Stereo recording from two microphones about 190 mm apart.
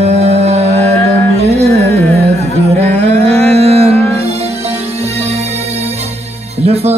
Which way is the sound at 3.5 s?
35° right (ahead or behind).